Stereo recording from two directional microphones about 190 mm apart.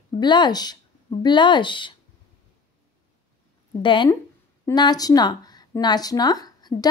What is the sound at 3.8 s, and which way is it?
A woman's voice, 25° left (ahead or behind).